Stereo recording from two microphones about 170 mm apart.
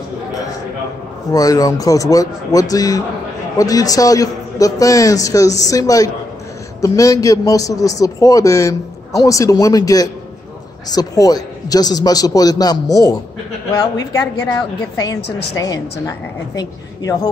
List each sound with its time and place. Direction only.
1.3 s a man's voice: 20° left (ahead or behind)
14.5 s a man's voice: 20° left (ahead or behind)